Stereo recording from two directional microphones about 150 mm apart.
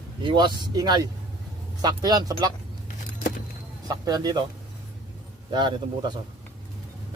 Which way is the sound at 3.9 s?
25° right (ahead or behind).